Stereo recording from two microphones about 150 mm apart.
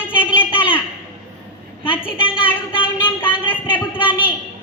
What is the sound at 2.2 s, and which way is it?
Speech, 35° left (ahead or behind).